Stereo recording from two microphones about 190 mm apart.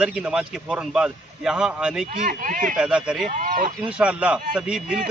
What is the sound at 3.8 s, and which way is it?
Speech, 5° right (ahead or behind).